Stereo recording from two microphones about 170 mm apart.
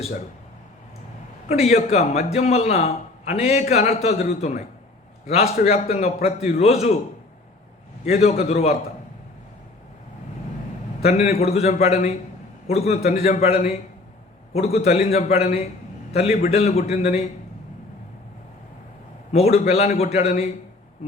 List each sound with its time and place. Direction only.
1.5 s a man's voice: 40° left (ahead or behind)
8.0 s a man's voice: 40° left (ahead or behind)
11.0 s a man's voice: 40° left (ahead or behind)
19.3 s a man's voice: 35° left (ahead or behind)